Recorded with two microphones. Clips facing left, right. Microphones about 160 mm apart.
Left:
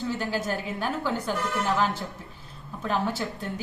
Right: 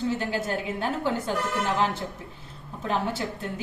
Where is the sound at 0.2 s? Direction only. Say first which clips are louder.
Right 1 dB; 25° right (ahead or behind).